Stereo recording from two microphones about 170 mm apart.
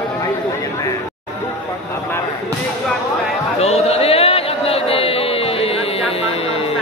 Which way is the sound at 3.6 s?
35° left (ahead or behind).